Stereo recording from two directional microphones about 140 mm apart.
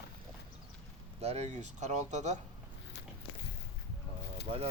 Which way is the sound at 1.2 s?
50° right (ahead or behind).